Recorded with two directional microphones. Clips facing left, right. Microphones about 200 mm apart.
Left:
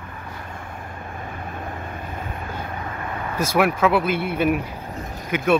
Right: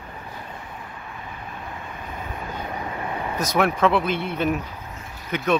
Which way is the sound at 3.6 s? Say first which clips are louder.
Left 1 dB; 5° left (ahead or behind).